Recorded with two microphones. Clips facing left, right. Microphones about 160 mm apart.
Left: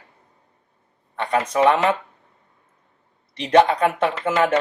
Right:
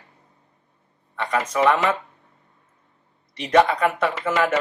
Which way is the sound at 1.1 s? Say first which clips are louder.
Left 2 dB; 35° left (ahead or behind).